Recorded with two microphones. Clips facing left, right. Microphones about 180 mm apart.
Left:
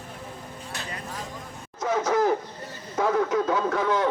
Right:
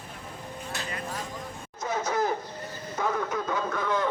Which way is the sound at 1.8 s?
90° left.